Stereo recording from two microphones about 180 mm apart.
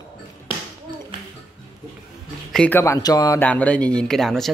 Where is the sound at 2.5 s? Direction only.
10° left (ahead or behind).